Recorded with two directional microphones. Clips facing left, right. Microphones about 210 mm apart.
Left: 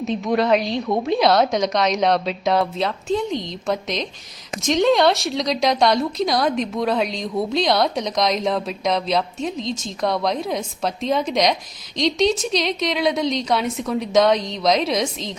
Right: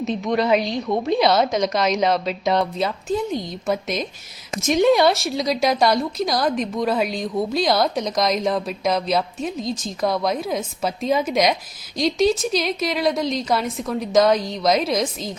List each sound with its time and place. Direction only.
0.0 s speech: centre (ahead or behind)